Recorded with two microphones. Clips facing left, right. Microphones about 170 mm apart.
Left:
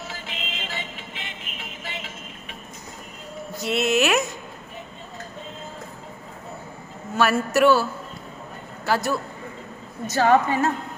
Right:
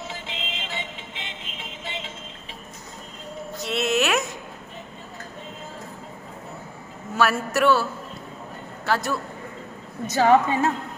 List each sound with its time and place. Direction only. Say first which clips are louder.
0.1 s music: right 1 dB; 20° right (ahead or behind)
3.6 s a sound: left 2 dB; 5° left (ahead or behind)
7.2 s speech: left 2 dB; centre (ahead or behind)
8.8 s speech: left 1 dB; 5° left (ahead or behind)
10.1 s a woman's voice: right 1 dB; 15° right (ahead or behind)